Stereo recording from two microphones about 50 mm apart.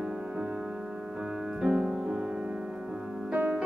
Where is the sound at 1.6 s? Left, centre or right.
Centre.